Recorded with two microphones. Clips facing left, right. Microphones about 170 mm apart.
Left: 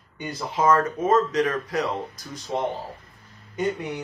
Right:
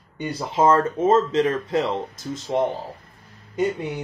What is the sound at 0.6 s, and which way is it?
Speech, 25° right (ahead or behind).